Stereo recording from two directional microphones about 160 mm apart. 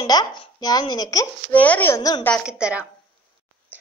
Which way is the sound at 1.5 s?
10° left (ahead or behind).